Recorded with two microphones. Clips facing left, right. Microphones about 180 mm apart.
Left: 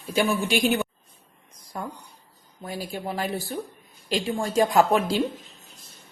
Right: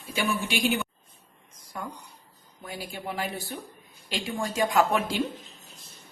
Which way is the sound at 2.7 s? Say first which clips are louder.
Left 4 dB; 35° left (ahead or behind).